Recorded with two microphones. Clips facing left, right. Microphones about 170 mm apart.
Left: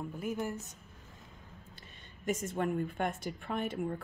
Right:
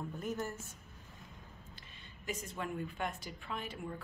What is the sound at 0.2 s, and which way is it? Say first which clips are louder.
Speech: left 4 dB; 10° left (ahead or behind).